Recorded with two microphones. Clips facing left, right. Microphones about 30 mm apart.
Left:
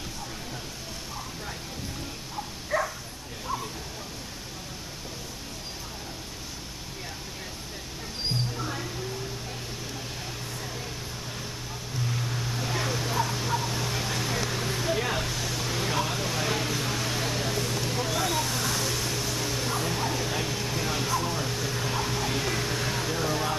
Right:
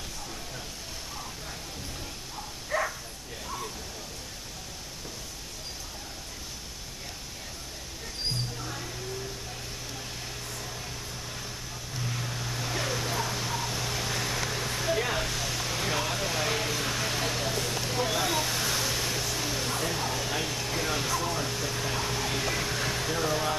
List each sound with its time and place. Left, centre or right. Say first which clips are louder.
2.7 s bow-wow: left 2 dB; centre
8.5 s mouse: left 4 dB; centre
12.0 s vehicle: left 3 dB; centre